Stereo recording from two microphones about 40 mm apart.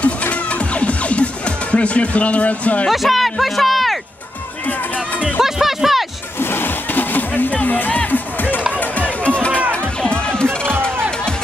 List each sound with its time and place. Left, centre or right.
0.0 s music: left
2.9 s a man's voice: centre
5.4 s speech: centre
6.4 s music: left
8.7 s run: left
10.0 s music: left